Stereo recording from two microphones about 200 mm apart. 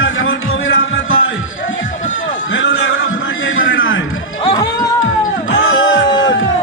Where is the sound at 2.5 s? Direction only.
75° left (ahead or behind).